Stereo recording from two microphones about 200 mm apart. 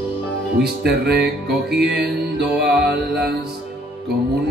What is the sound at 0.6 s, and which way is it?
Music, 55° right (ahead or behind).